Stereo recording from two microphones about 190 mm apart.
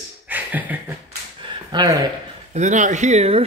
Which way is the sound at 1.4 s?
20° right (ahead or behind).